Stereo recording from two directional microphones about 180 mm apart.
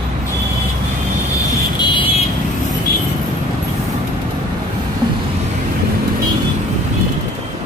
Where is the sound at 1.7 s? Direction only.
30° left (ahead or behind).